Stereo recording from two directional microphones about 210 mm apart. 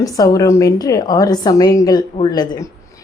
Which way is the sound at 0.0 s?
15° left (ahead or behind).